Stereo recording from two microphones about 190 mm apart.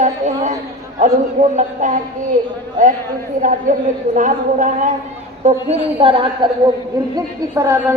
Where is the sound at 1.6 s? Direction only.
40° right (ahead or behind).